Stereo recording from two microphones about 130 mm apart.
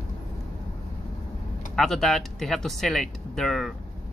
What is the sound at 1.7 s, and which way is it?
Speech, centre (ahead or behind).